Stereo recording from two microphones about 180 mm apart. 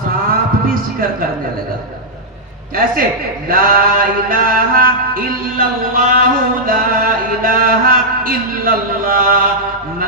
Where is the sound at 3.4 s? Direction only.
55° right (ahead or behind).